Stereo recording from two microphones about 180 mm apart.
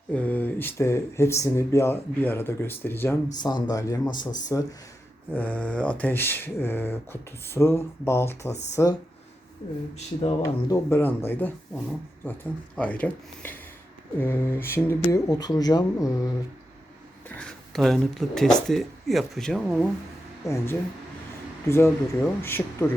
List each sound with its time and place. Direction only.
0.1 s speech: 10° left (ahead or behind)
3.3 s speech: 25° left (ahead or behind)
5.3 s speech: 10° left (ahead or behind)
10.4 s speech: 15° left (ahead or behind)
17.2 s speech: 5° left (ahead or behind)
20.4 s speech: 15° left (ahead or behind)